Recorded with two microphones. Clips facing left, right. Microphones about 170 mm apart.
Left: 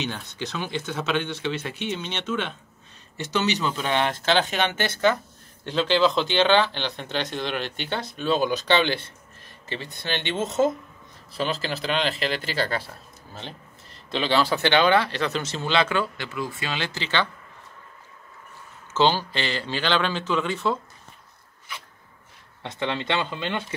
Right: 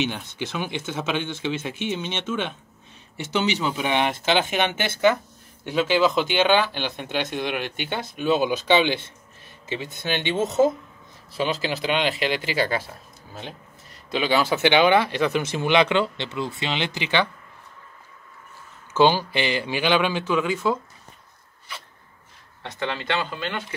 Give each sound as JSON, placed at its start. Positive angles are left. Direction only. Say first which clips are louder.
{"t": 0.1, "sound": "speech", "louder": "right 2 dB", "side_deg": -15}
{"t": 18.9, "sound": "speech", "louder": "right 3 dB", "side_deg": -15}
{"t": 22.6, "sound": "speech", "louder": "left 1 dB", "side_deg": 20}